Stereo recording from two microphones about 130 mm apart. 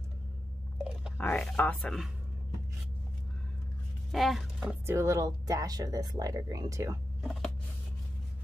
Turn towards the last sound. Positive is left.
turn(degrees=0)  # may be behind; listen again after turning